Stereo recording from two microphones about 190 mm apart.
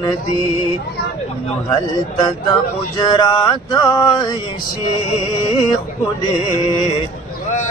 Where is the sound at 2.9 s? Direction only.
25° left (ahead or behind).